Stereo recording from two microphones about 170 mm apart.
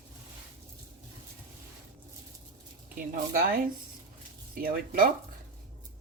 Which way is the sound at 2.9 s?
55° right (ahead or behind).